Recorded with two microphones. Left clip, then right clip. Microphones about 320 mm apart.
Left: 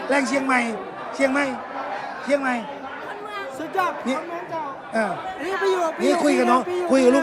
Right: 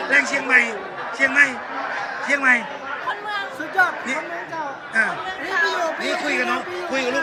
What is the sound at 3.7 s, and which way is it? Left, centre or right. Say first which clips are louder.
Speech: right 4 dB; centre.